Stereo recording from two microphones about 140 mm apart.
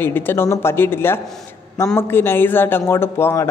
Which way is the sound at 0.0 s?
15° left (ahead or behind).